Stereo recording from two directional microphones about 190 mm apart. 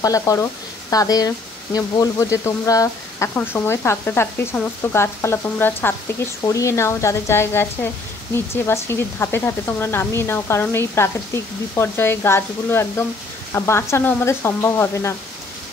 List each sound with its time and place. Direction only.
0.0 s speech: 20° left (ahead or behind)